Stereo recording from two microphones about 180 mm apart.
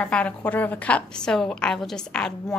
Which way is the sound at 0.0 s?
5° left (ahead or behind).